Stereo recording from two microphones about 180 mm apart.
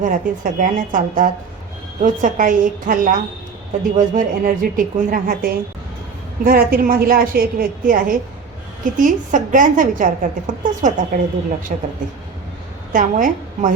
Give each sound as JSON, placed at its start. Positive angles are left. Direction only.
{"t": 0.0, "sound": "a woman's voice", "side_deg": -50}
{"t": 12.9, "sound": "a woman's voice", "side_deg": -45}